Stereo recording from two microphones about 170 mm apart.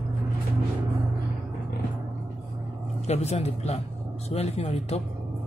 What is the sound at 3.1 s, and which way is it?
A man's voice, 40° left (ahead or behind).